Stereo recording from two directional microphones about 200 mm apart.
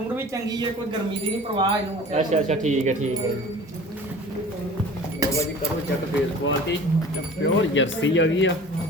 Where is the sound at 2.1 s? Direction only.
35° right (ahead or behind).